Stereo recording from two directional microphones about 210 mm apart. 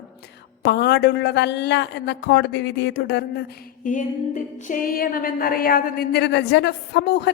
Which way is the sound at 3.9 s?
35° left (ahead or behind).